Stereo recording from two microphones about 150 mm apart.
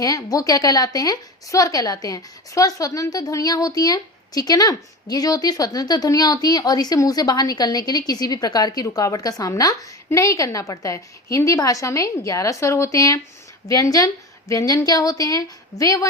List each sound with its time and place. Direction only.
0.0 s a woman's voice: 25° left (ahead or behind)